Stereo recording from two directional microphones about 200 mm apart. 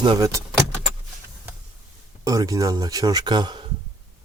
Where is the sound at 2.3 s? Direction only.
15° right (ahead or behind).